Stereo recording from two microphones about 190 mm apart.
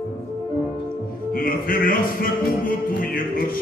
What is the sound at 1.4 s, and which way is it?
Speech, 50° left (ahead or behind).